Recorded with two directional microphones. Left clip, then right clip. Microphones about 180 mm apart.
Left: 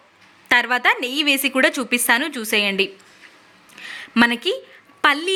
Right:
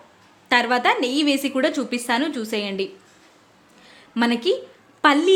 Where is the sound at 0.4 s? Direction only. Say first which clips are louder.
Left 2 dB; 10° left (ahead or behind).